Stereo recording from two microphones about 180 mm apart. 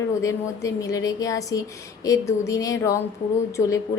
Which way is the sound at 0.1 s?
15° left (ahead or behind).